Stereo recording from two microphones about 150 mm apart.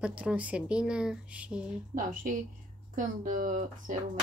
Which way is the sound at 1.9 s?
60° right (ahead or behind).